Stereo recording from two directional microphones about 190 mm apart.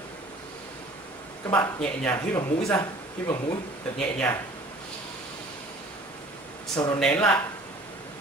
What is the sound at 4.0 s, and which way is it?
Speech, 5° left (ahead or behind).